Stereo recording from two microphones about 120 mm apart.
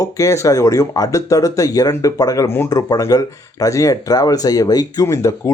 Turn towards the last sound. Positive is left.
turn(degrees=25)  # may be behind; listen again after turning